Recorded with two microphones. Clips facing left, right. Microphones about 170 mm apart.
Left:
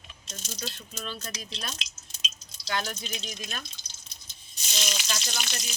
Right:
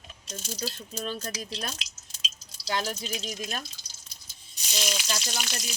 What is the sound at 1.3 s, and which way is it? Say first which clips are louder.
Speech: right 5 dB; 10° right (ahead or behind).